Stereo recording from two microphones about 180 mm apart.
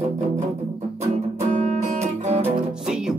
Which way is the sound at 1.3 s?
40° right (ahead or behind).